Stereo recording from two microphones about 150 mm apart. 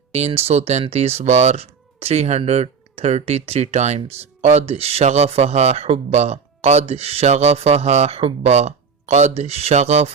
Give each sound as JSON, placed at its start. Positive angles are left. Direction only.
{"t": 0.1, "sound": "speech", "side_deg": -45}